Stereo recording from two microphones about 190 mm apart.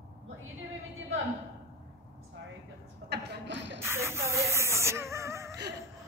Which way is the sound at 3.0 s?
65° right (ahead or behind).